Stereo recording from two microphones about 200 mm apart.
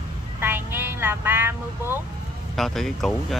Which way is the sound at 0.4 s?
10° right (ahead or behind).